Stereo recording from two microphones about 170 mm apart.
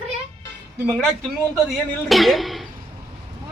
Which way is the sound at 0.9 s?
5° left (ahead or behind).